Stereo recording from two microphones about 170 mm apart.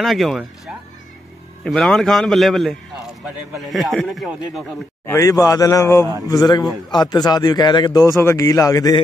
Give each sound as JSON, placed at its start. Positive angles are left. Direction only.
{"t": 0.0, "sound": "a man's voice", "side_deg": 0}
{"t": 5.0, "sound": "speech", "side_deg": 15}